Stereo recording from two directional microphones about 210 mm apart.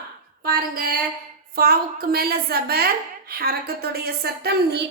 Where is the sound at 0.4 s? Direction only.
45° right (ahead or behind).